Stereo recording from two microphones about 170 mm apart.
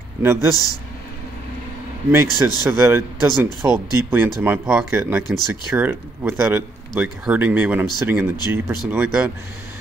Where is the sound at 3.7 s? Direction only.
25° left (ahead or behind).